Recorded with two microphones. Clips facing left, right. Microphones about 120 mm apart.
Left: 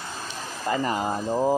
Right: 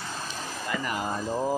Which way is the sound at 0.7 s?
30° left (ahead or behind).